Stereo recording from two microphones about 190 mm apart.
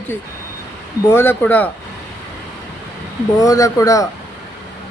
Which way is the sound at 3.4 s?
15° left (ahead or behind).